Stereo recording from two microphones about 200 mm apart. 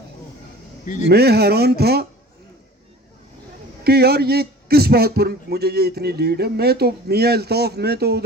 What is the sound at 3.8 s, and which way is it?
A man's voice, 55° right (ahead or behind).